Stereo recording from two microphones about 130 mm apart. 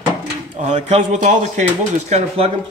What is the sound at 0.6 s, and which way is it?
Speech, 60° right (ahead or behind).